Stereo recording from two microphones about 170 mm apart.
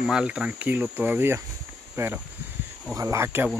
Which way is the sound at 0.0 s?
5° right (ahead or behind).